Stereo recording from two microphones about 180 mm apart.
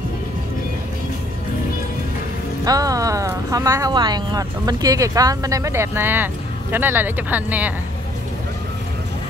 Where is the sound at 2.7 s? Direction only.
20° right (ahead or behind).